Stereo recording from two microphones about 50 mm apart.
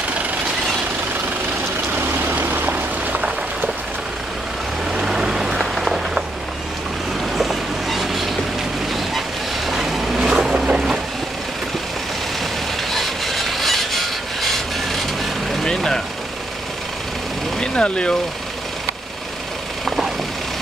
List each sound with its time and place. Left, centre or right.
2.0 s a sound: right
4.9 s vehicle: centre
7.3 s boat: centre
9.7 s vehicle: centre
10.4 s boat: centre
12.9 s a sound: centre
17.6 s vehicle: centre